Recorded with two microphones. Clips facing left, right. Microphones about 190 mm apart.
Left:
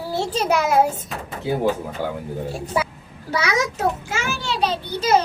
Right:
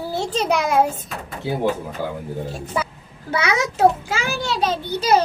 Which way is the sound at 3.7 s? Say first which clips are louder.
Right 6 dB; 35° right (ahead or behind).